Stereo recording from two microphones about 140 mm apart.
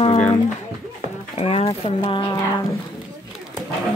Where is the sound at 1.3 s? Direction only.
45° left (ahead or behind).